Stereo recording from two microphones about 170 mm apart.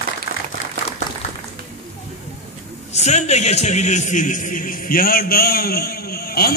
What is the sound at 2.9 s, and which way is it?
A man's voice, 40° left (ahead or behind).